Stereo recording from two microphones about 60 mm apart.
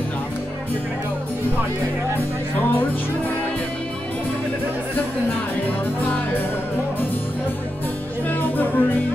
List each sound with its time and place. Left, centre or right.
5.9 s music: left
8.3 s music: left